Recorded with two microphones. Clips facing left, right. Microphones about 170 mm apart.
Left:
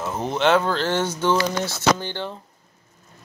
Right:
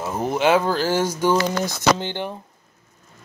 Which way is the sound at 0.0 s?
10° right (ahead or behind).